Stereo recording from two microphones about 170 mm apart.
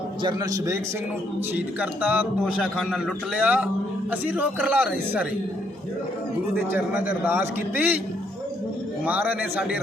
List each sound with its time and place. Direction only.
0.2 s a man's voice: 25° right (ahead or behind)
1.5 s a man's voice: 10° right (ahead or behind)
6.7 s a man's voice: 10° right (ahead or behind)
9.0 s a man's voice: 10° right (ahead or behind)